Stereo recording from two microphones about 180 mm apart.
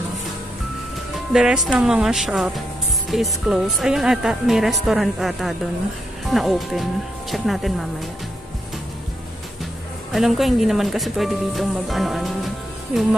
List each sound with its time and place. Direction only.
1.3 s speech: 5° right (ahead or behind)
10.1 s speech: centre (ahead or behind)